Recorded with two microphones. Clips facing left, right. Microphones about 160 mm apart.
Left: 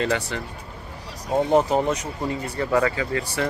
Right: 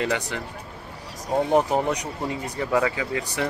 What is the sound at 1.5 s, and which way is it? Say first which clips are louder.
Speech: left 2 dB; 15° right (ahead or behind).